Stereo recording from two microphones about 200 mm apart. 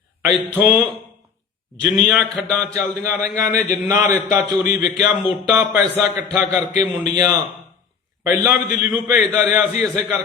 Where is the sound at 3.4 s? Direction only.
40° left (ahead or behind).